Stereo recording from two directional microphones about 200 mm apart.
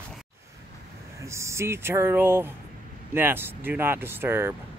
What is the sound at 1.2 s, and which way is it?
Speech, 15° right (ahead or behind).